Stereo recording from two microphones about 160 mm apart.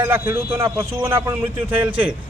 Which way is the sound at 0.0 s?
15° right (ahead or behind).